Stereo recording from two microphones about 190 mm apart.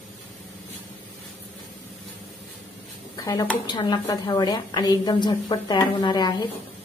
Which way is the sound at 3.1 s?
20° left (ahead or behind).